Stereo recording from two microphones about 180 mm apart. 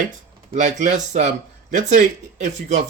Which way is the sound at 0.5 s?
40° right (ahead or behind).